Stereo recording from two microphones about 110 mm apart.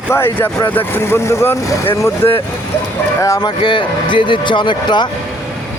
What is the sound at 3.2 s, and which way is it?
A man's voice, 35° left (ahead or behind).